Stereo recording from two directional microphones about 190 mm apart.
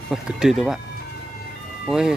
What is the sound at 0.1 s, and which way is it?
Speech, centre (ahead or behind).